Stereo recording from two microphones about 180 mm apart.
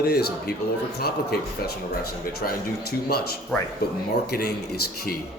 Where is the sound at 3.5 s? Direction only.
5° left (ahead or behind).